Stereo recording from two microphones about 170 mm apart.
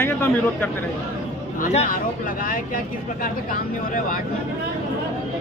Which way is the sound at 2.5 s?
55° left (ahead or behind).